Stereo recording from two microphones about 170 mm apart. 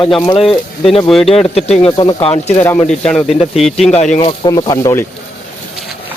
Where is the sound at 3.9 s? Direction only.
40° left (ahead or behind).